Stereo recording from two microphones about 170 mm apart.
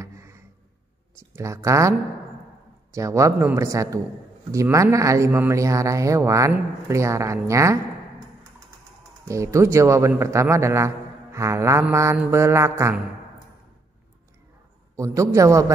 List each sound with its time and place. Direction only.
0.0 s a sound: 15° right (ahead or behind)
1.1 s a man's voice: 20° right (ahead or behind)
9.2 s speech: 20° right (ahead or behind)
15.0 s a man's voice: 20° right (ahead or behind)